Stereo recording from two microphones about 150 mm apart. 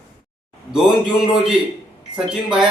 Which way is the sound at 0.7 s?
5° right (ahead or behind).